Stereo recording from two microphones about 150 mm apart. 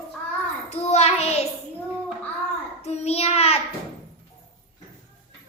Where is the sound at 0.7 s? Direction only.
45° left (ahead or behind).